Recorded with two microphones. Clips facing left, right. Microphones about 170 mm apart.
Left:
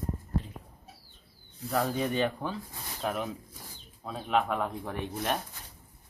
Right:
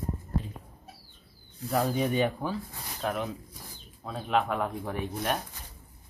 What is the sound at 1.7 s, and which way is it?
Speech, 10° right (ahead or behind).